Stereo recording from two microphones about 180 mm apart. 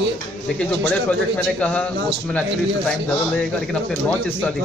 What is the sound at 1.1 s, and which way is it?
Speech, 5° left (ahead or behind).